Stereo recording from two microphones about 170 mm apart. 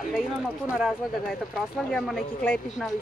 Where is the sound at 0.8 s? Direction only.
Centre (ahead or behind).